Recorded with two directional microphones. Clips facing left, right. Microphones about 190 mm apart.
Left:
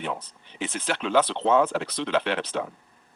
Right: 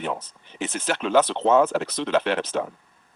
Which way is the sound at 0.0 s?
45° right (ahead or behind).